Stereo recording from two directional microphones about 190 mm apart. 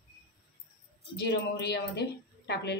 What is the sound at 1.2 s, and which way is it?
A woman's voice, 60° left (ahead or behind).